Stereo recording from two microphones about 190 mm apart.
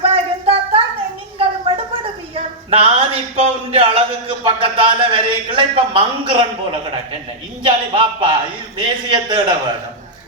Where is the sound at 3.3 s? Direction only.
30° right (ahead or behind).